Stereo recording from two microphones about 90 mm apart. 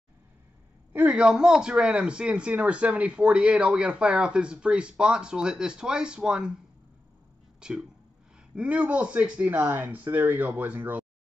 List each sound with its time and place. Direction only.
1.0 s speech: 10° right (ahead or behind)
7.6 s speech: 10° right (ahead or behind)